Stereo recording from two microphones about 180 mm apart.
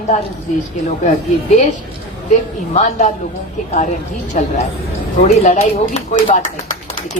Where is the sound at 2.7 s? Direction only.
40° left (ahead or behind).